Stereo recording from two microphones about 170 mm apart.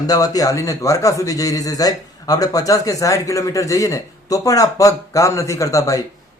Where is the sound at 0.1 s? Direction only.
20° left (ahead or behind).